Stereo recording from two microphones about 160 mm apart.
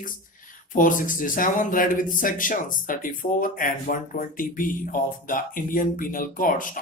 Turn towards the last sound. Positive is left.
turn(degrees=60)  # may be behind; listen again after turning